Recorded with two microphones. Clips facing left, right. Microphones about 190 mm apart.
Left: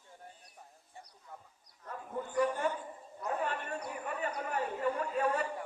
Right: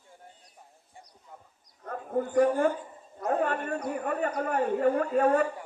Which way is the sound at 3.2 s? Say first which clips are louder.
Right 8 dB; 55° right (ahead or behind).